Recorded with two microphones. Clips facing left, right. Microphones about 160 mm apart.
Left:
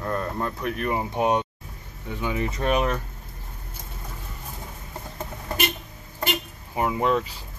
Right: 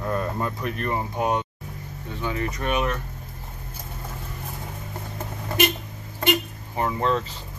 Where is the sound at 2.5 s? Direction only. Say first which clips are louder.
Left 4 dB; 35° left (ahead or behind).